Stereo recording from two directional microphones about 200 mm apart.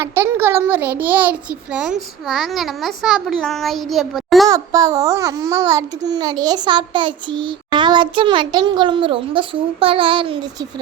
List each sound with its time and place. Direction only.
0.0 s a child's voice: 10° right (ahead or behind)
4.4 s a child's voice: 15° right (ahead or behind)